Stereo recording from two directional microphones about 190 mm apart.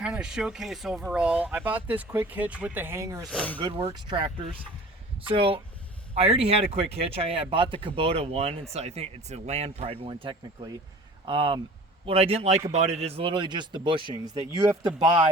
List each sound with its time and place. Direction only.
0.0 s speech: 5° right (ahead or behind)
3.2 s speech: 5° left (ahead or behind)
3.6 s speech: 20° right (ahead or behind)